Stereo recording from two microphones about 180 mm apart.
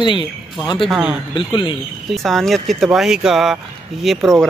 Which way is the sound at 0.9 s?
5° right (ahead or behind).